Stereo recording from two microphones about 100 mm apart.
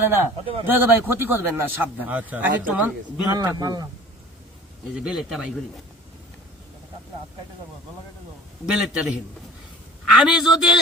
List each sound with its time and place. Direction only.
0.0 s a man's voice: 20° right (ahead or behind)
3.2 s speech: 40° right (ahead or behind)
4.9 s a man's voice: 5° right (ahead or behind)
8.6 s a man's voice: 5° right (ahead or behind)